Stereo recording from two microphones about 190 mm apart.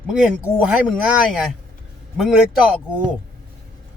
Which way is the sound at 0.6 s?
5° right (ahead or behind).